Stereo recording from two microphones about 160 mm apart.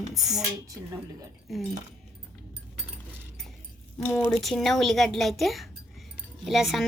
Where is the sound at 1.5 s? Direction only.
Centre (ahead or behind).